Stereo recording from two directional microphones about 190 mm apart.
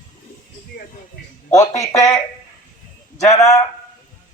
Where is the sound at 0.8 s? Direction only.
45° left (ahead or behind).